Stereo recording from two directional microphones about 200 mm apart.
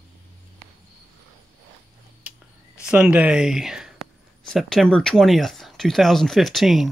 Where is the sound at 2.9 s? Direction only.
5° right (ahead or behind).